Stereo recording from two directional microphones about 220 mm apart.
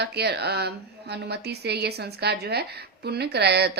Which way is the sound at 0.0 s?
50° right (ahead or behind).